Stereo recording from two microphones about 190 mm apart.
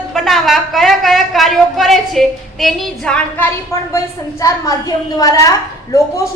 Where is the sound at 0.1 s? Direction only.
Centre (ahead or behind).